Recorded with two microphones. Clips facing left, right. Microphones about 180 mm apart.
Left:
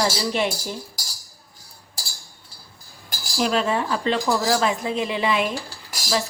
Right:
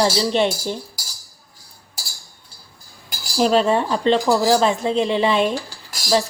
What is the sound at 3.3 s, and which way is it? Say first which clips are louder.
Speech: right 5 dB; 35° right (ahead or behind).